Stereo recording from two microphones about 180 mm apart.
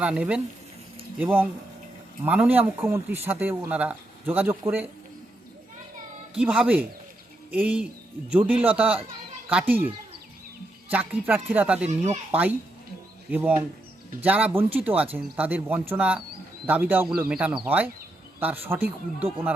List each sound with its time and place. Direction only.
0.0 s speech: 5° right (ahead or behind)
6.3 s speech: 5° right (ahead or behind)
10.9 s speech: 10° right (ahead or behind)
11.9 s speech: 40° right (ahead or behind)
12.3 s speech: 10° right (ahead or behind)